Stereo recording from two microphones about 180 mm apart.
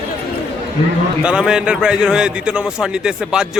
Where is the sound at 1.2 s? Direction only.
5° right (ahead or behind).